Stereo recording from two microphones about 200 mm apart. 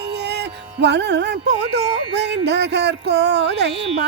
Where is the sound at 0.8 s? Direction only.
60° right (ahead or behind).